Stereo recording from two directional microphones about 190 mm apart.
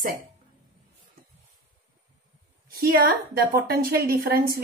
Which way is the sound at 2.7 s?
50° right (ahead or behind).